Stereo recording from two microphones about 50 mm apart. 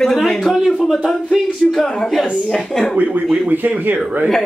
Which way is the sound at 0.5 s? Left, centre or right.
Centre.